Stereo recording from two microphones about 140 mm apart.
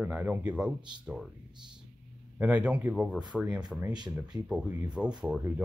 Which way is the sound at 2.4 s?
10° right (ahead or behind).